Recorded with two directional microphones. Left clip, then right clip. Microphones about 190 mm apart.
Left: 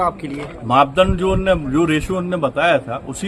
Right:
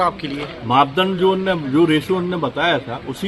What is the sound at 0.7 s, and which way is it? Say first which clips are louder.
A man's voice: left 2 dB; 30° left (ahead or behind).